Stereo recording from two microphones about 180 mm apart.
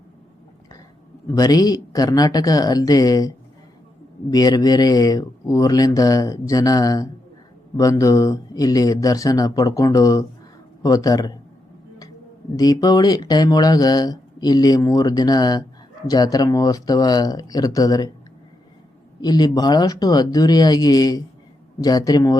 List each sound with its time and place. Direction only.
1.4 s speech: 20° left (ahead or behind)
12.5 s speech: 20° left (ahead or behind)
19.2 s speech: 20° left (ahead or behind)